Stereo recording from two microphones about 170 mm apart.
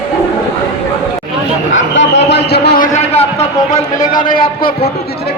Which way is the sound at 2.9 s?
40° left (ahead or behind).